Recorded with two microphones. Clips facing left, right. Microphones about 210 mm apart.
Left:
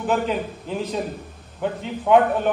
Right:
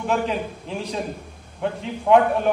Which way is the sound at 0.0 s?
Centre (ahead or behind).